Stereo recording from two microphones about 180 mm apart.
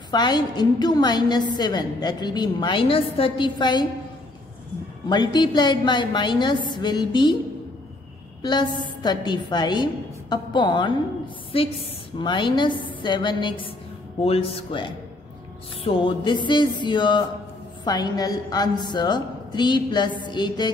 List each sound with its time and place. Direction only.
0.1 s a woman's voice: 25° left (ahead or behind)
5.1 s a woman's voice: 25° left (ahead or behind)
8.4 s a woman's voice: 25° left (ahead or behind)